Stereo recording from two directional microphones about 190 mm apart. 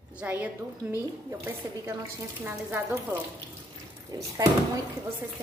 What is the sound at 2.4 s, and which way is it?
A woman's voice, 10° right (ahead or behind).